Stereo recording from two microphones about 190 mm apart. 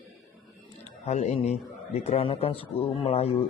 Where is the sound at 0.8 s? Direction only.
35° left (ahead or behind).